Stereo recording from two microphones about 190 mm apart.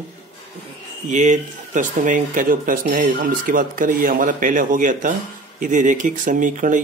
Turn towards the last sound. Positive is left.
turn(degrees=-40)  # may be behind; listen again after turning